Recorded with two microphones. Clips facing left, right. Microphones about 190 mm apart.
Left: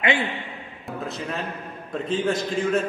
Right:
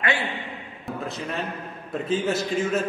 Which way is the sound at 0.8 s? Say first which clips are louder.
Even; centre (ahead or behind).